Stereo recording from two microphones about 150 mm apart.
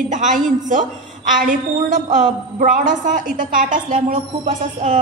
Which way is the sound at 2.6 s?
60° right (ahead or behind).